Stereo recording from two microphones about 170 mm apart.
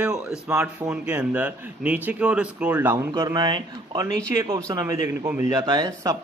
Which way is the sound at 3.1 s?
20° right (ahead or behind).